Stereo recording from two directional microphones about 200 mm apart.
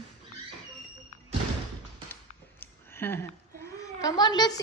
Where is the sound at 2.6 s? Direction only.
10° left (ahead or behind).